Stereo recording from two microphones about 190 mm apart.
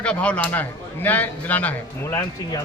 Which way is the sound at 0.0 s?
5° left (ahead or behind).